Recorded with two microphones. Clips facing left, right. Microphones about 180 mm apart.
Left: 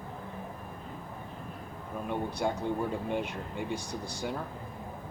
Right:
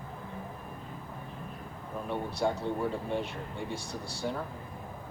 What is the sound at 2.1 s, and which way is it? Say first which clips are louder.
Speech: right 1 dB; 15° left (ahead or behind).